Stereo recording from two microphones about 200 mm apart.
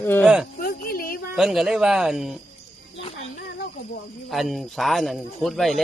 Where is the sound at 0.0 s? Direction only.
10° left (ahead or behind).